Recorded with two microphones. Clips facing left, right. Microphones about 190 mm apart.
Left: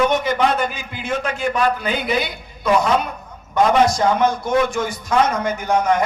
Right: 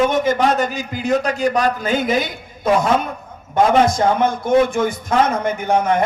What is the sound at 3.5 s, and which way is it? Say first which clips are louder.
A man's voice: right 1 dB; 55° right (ahead or behind).